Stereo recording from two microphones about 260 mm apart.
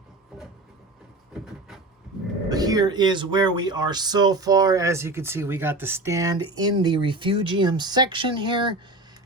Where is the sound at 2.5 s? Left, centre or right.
Centre.